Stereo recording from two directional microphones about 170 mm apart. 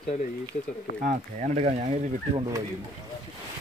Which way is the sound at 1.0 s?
45° right (ahead or behind).